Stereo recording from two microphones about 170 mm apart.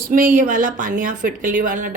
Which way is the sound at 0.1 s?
55° right (ahead or behind).